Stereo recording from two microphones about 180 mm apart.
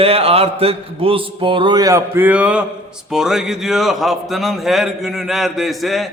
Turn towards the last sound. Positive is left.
turn(degrees=0)  # may be behind; listen again after turning